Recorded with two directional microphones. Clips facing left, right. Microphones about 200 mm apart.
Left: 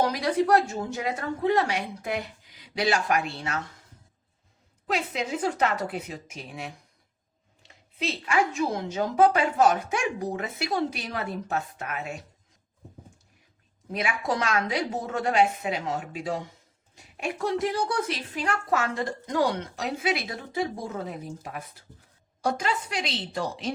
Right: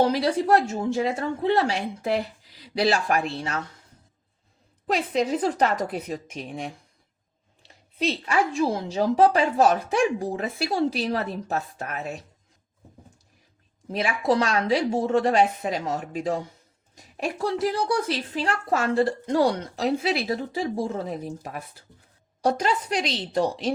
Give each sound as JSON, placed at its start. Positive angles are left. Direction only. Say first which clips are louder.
{"t": 0.0, "sound": "a woman's voice", "louder": "right 3 dB", "side_deg": -30}
{"t": 5.1, "sound": "a woman's voice", "louder": "right 5 dB", "side_deg": -35}
{"t": 7.9, "sound": "a woman's voice", "louder": "right 2 dB", "side_deg": -35}
{"t": 13.9, "sound": "a woman's voice", "louder": "right 5 dB", "side_deg": -30}